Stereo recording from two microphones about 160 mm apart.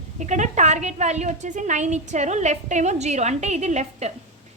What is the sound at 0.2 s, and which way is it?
Speech, 50° right (ahead or behind).